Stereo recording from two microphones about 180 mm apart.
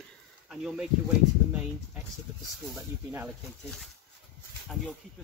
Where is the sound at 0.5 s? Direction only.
5° right (ahead or behind).